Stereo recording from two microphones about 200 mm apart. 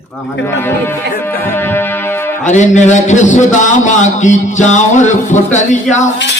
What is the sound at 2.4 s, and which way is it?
A man's voice, 35° left (ahead or behind).